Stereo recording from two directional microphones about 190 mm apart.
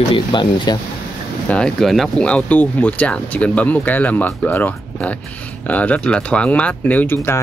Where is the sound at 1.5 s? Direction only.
5° left (ahead or behind).